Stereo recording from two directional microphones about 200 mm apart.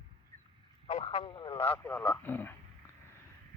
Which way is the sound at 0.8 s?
30° left (ahead or behind).